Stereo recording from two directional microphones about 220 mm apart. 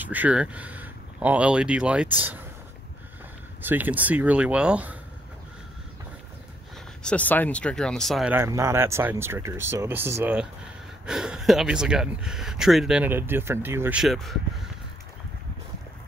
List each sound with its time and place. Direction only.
0.0 s speech: 10° right (ahead or behind)
3.6 s speech: 10° right (ahead or behind)
7.0 s speech: 5° left (ahead or behind)